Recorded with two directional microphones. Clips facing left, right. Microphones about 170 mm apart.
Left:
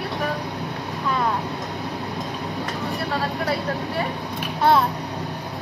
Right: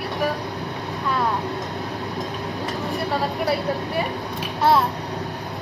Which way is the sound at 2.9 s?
15° right (ahead or behind).